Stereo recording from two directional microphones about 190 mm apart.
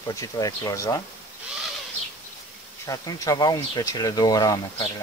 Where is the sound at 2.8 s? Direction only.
20° left (ahead or behind).